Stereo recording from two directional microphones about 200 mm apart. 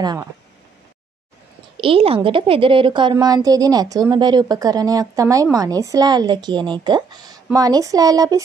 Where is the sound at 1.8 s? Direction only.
25° right (ahead or behind).